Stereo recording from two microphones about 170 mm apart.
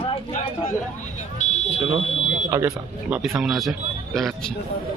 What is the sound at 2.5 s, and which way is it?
Speech, 20° right (ahead or behind).